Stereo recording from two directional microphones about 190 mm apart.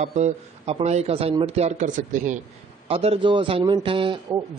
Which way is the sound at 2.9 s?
30° right (ahead or behind).